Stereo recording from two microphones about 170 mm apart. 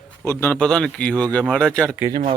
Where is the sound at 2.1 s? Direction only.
30° right (ahead or behind).